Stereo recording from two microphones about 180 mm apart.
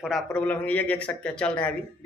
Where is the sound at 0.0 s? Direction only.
5° left (ahead or behind).